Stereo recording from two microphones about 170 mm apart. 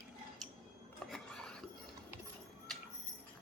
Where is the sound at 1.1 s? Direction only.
5° left (ahead or behind).